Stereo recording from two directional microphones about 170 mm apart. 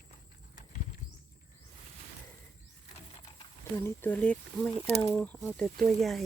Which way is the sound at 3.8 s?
15° left (ahead or behind).